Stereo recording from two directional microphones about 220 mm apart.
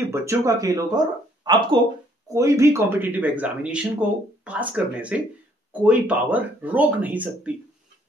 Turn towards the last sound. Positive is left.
turn(degrees=-5)  # may be behind; listen again after turning